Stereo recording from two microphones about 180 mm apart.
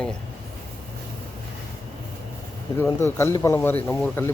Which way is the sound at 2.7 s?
15° left (ahead or behind).